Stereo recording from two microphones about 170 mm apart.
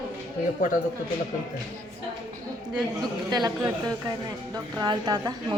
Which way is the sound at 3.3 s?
25° right (ahead or behind).